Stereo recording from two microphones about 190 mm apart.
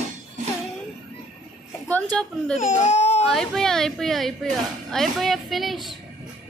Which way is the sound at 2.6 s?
40° left (ahead or behind).